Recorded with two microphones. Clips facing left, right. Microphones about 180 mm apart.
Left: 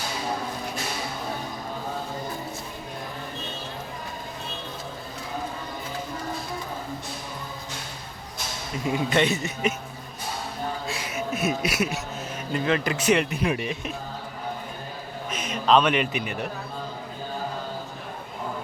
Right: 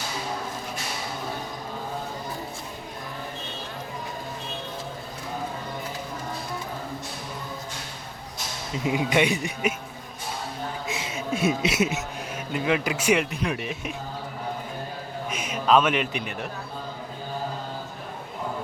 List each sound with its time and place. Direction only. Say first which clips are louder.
8.7 s speech: right 1 dB; 15° right (ahead or behind)
10.8 s a sound: even; 25° right (ahead or behind)
12.5 s speech: even; 10° right (ahead or behind)
13.3 s speech: left 3 dB; 5° left (ahead or behind)
15.3 s a man's voice: even; 10° right (ahead or behind)